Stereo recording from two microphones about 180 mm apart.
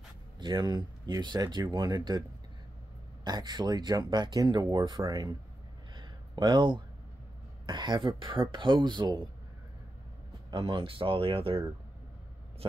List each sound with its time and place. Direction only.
0.4 s speech: 25° right (ahead or behind)
3.3 s speech: 25° right (ahead or behind)
5.9 s a sound: 25° right (ahead or behind)
7.6 s speech: 25° right (ahead or behind)
10.5 s speech: 25° right (ahead or behind)